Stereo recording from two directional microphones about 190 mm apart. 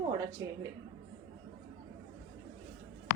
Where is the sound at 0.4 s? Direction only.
15° right (ahead or behind).